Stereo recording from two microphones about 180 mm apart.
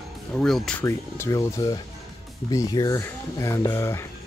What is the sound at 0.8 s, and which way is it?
Speech, 15° left (ahead or behind).